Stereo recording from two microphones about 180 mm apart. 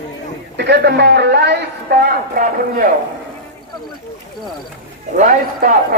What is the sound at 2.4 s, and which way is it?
Speech, 50° right (ahead or behind).